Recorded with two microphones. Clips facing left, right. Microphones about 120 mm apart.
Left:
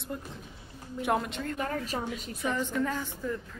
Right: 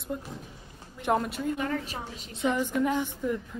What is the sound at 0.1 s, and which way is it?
A woman's voice, 5° right (ahead or behind).